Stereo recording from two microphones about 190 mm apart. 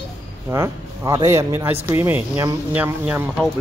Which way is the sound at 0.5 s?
15° right (ahead or behind).